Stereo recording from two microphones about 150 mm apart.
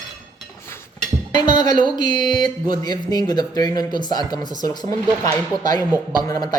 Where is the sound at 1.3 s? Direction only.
30° left (ahead or behind).